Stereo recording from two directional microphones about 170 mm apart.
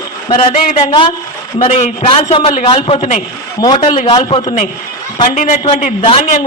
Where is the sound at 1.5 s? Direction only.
40° left (ahead or behind); by 4.5 s 25° left (ahead or behind).